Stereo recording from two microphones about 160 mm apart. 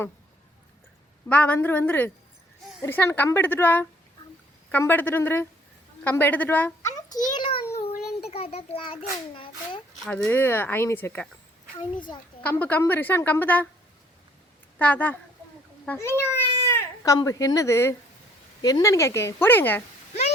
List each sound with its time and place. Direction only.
1.3 s a woman's voice: 10° left (ahead or behind)
7.3 s a sound: 35° left (ahead or behind)
8.3 s a child's voice: 40° left (ahead or behind)
10.1 s a woman's voice: 15° left (ahead or behind)
11.8 s speech: 30° left (ahead or behind)
12.4 s a woman's voice: 10° left (ahead or behind)
14.8 s a woman's voice: 10° left (ahead or behind)
16.6 s baby cry: 15° left (ahead or behind)
17.2 s a woman's voice: 20° left (ahead or behind)